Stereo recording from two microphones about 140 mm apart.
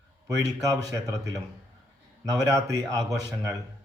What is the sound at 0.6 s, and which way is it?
Speech, 25° right (ahead or behind).